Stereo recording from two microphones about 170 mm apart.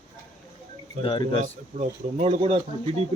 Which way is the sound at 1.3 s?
45° right (ahead or behind).